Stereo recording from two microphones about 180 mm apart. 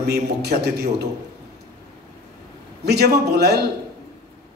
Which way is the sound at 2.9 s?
65° right (ahead or behind).